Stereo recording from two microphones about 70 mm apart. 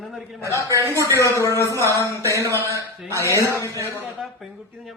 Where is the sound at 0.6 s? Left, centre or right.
Right.